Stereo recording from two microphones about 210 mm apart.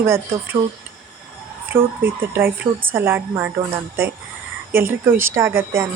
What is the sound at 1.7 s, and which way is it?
A woman's voice, 10° right (ahead or behind).